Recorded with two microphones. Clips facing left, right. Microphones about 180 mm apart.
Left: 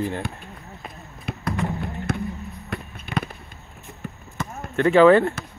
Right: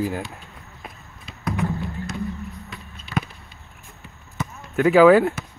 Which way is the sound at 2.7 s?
60° left (ahead or behind).